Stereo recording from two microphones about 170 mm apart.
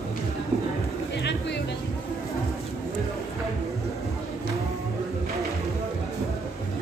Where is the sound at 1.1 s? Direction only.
90° left.